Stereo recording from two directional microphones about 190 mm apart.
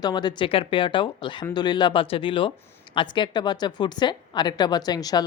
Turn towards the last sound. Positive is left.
turn(degrees=20)  # may be behind; listen again after turning